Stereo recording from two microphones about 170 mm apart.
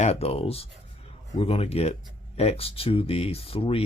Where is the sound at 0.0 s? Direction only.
40° left (ahead or behind).